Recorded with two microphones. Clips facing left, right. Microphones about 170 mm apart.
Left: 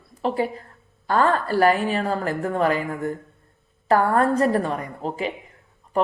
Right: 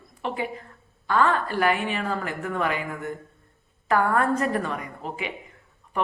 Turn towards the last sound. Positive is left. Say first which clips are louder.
# left 5 dB
turn(degrees=35)  # may be behind; listen again after turning